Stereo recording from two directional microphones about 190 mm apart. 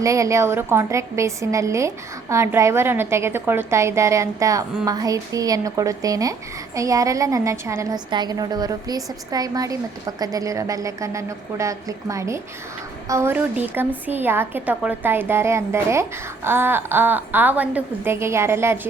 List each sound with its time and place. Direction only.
0.0 s a woman's voice: 15° right (ahead or behind)